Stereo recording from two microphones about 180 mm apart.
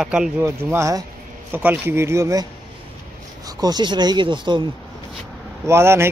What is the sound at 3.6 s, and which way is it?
Speech, 25° right (ahead or behind).